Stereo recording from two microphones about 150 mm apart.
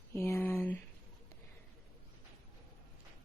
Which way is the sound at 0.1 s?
20° left (ahead or behind).